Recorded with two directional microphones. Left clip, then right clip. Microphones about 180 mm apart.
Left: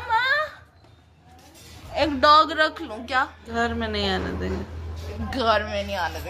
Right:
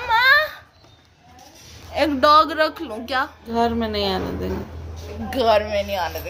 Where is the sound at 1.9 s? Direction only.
5° right (ahead or behind).